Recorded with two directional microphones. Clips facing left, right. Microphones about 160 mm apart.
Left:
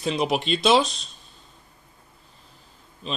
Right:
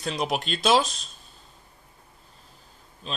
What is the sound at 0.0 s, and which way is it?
Speech, centre (ahead or behind).